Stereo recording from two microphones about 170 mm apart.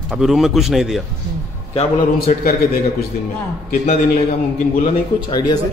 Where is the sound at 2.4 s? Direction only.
60° left (ahead or behind).